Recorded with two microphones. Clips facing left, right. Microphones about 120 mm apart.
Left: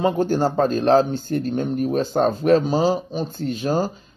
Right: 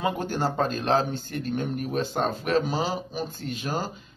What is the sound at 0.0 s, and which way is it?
Speech, 35° left (ahead or behind).